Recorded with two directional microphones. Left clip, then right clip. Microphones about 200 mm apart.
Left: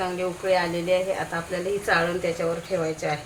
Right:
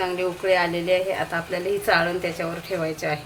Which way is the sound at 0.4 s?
30° right (ahead or behind).